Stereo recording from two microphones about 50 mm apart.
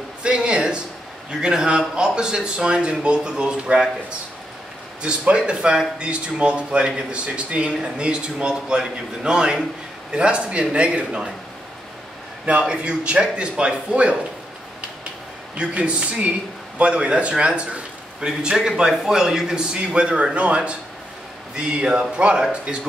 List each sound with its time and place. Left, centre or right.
0.2 s a sound: centre
1.3 s speech: centre
5.0 s a man's voice: centre
12.4 s a man's voice: right
15.5 s a man's voice: right